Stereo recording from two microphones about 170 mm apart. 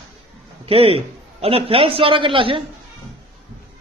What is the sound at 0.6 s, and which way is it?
A man's voice, 35° right (ahead or behind).